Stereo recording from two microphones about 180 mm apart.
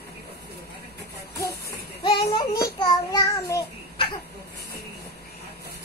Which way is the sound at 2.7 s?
25° left (ahead or behind).